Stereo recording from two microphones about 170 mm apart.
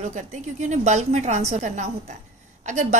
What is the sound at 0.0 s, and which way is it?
A woman's voice, 45° right (ahead or behind).